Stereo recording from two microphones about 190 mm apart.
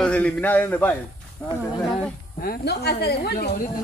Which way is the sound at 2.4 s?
55° left (ahead or behind).